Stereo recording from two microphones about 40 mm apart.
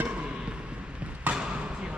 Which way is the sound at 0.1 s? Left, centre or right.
Right.